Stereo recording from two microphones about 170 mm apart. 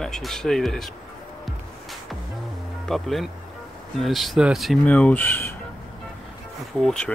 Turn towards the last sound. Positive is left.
turn(degrees=5)  # may be behind; listen again after turning